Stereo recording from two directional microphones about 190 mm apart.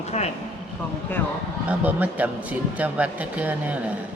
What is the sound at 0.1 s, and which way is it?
Speech, 35° left (ahead or behind).